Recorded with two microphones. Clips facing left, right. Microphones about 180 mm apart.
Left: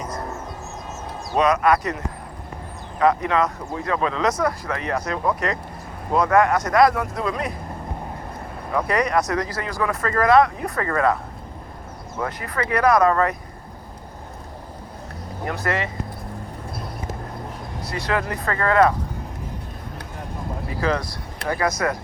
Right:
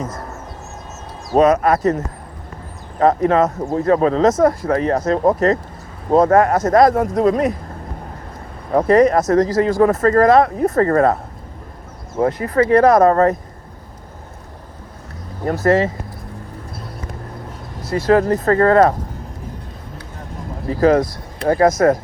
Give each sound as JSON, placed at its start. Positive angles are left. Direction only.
{"t": 1.7, "sound": "speech", "side_deg": -45}
{"t": 3.0, "sound": "speech", "side_deg": -40}
{"t": 6.3, "sound": "speech", "side_deg": -30}
{"t": 6.7, "sound": "speech", "side_deg": -45}
{"t": 8.7, "sound": "speech", "side_deg": -45}
{"t": 12.2, "sound": "speech", "side_deg": -30}
{"t": 12.8, "sound": "speech", "side_deg": -45}
{"t": 15.4, "sound": "speech", "side_deg": -40}
{"t": 17.8, "sound": "speech", "side_deg": -45}
{"t": 20.7, "sound": "speech", "side_deg": -45}